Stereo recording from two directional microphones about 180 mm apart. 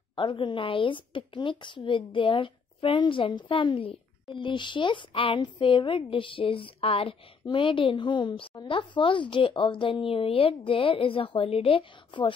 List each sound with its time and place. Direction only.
0.1 s a woman's voice: 25° left (ahead or behind)